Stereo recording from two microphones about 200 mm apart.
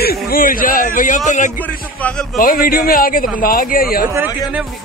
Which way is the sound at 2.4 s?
45° left (ahead or behind).